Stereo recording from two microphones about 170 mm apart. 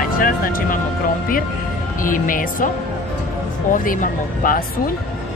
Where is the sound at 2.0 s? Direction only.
50° left (ahead or behind).